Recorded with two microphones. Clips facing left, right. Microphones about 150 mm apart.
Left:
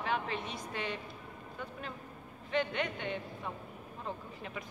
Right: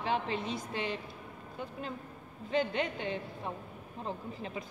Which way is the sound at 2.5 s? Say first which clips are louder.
Right 2 dB; 30° right (ahead or behind).